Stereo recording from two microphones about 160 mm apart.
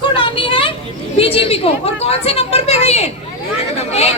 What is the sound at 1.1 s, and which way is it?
A woman's voice, 35° left (ahead or behind).